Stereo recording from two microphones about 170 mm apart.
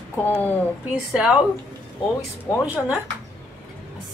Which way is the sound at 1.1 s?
5° right (ahead or behind).